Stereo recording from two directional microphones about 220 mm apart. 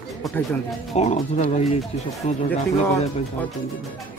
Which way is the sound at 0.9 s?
30° left (ahead or behind).